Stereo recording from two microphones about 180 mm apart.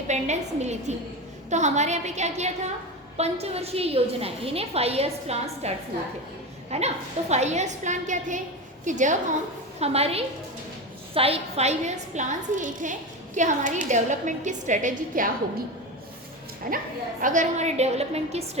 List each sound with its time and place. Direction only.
0.1 s a woman's voice: 40° right (ahead or behind)
16.6 s a woman's voice: 50° right (ahead or behind)